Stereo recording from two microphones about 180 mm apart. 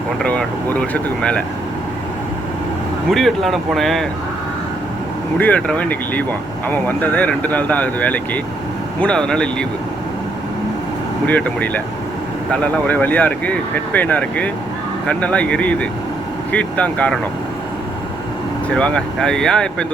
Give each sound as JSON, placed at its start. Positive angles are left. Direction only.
{"t": 0.2, "sound": "speech", "side_deg": 5}
{"t": 3.1, "sound": "speech", "side_deg": 0}
{"t": 5.4, "sound": "speech", "side_deg": 5}
{"t": 11.3, "sound": "speech", "side_deg": 10}
{"t": 18.8, "sound": "speech", "side_deg": 5}